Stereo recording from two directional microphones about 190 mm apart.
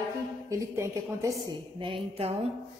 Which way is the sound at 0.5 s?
15° right (ahead or behind).